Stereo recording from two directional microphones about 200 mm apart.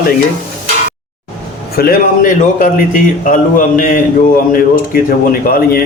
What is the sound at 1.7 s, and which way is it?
Speech, 45° left (ahead or behind).